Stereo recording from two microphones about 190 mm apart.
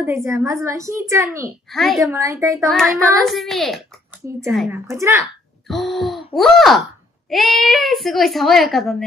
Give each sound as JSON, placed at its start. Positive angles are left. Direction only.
{"t": 0.0, "sound": "a woman's voice", "side_deg": -15}
{"t": 1.7, "sound": "speech", "side_deg": 0}
{"t": 2.1, "sound": "a woman's voice", "side_deg": -15}
{"t": 2.7, "sound": "speech", "side_deg": 0}
{"t": 4.6, "sound": "a woman's voice", "side_deg": -15}
{"t": 5.2, "sound": "speech", "side_deg": 0}